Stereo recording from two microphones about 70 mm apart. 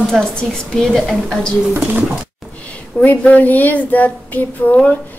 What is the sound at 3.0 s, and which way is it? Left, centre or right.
Speech, left.